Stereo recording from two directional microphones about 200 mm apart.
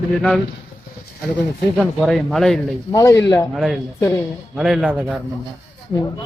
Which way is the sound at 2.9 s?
15° left (ahead or behind).